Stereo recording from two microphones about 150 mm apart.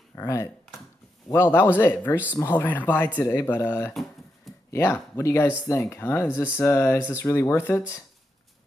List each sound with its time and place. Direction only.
0.1 s speech: 15° left (ahead or behind)